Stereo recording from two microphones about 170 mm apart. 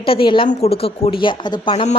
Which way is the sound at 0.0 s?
30° left (ahead or behind).